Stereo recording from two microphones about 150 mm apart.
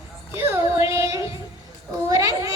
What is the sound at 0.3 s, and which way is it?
Child singing, 15° right (ahead or behind).